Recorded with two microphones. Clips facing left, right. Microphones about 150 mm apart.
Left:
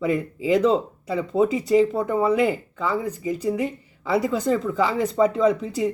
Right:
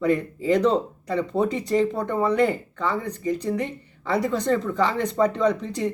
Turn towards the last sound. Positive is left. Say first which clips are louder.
# left 2 dB
turn(degrees=5)  # may be behind; listen again after turning